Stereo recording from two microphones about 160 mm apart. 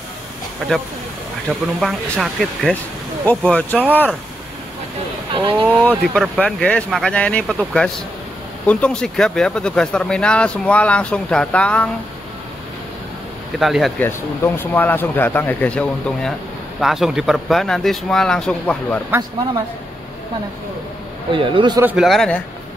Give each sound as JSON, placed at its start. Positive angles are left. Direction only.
{"t": 1.8, "sound": "speech", "side_deg": 0}
{"t": 5.3, "sound": "speech", "side_deg": -30}
{"t": 5.7, "sound": "speech", "side_deg": 5}
{"t": 6.4, "sound": "speech", "side_deg": 5}
{"t": 13.6, "sound": "speech", "side_deg": 0}
{"t": 13.9, "sound": "speech", "side_deg": 15}
{"t": 21.3, "sound": "speech", "side_deg": -30}
{"t": 21.8, "sound": "speech", "side_deg": 0}